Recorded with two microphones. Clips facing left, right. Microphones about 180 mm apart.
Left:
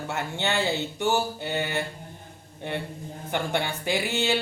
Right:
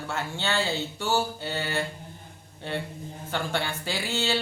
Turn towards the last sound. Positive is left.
turn(degrees=15)  # may be behind; listen again after turning